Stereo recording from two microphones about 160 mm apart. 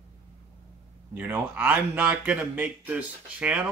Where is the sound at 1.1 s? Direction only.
10° right (ahead or behind).